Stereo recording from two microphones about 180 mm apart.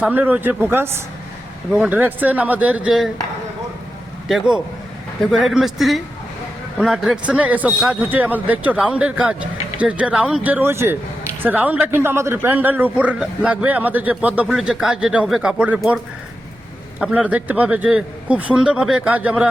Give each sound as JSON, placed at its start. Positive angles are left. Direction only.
{"t": 0.0, "sound": "a man's voice", "side_deg": -10}
{"t": 4.3, "sound": "a man's voice", "side_deg": -5}
{"t": 17.0, "sound": "a man's voice", "side_deg": -5}